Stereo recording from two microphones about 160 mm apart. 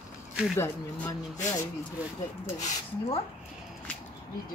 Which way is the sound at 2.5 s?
50° left (ahead or behind).